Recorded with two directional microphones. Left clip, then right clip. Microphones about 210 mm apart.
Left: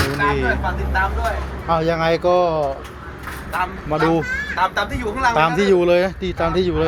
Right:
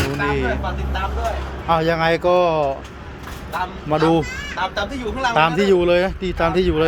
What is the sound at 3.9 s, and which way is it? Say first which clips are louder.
Speech: right 1 dB; 15° right (ahead or behind).